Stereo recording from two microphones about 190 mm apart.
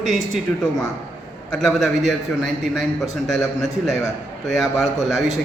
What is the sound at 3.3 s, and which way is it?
Speech, centre (ahead or behind).